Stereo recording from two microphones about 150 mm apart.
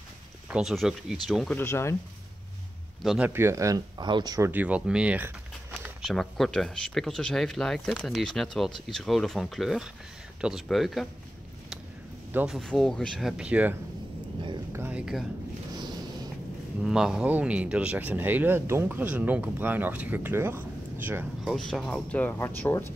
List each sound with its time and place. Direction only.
0.5 s speech: centre (ahead or behind)
1.6 s speech: 15° left (ahead or behind)
3.0 s speech: centre (ahead or behind)
3.3 s speech: 15° right (ahead or behind)
4.5 s speech: 10° right (ahead or behind)
6.0 s speech: centre (ahead or behind)
12.3 s speech: 10° right (ahead or behind)
12.5 s speech: 5° left (ahead or behind)
14.7 s a sound: 15° right (ahead or behind)
16.8 s speech: 5° right (ahead or behind)
21.5 s speech: centre (ahead or behind)